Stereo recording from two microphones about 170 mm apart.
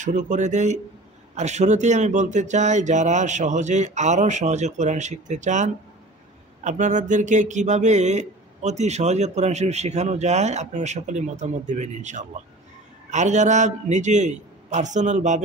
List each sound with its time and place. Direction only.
0.0 s speech: 45° right (ahead or behind)